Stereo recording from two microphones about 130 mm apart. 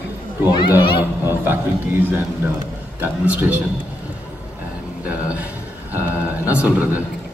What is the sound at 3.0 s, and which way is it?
Speech, 10° right (ahead or behind).